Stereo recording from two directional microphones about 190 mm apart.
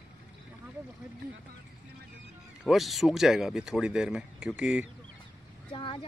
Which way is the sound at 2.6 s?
Centre (ahead or behind).